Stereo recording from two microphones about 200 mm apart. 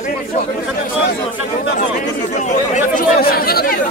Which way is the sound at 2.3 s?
35° left (ahead or behind).